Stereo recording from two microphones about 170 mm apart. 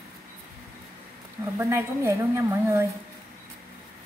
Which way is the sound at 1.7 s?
15° right (ahead or behind).